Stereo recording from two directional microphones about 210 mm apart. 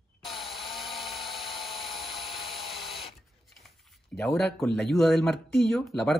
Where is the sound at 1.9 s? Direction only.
25° left (ahead or behind).